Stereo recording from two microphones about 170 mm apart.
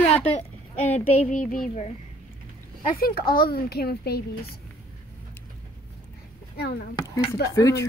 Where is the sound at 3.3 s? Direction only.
60° left (ahead or behind).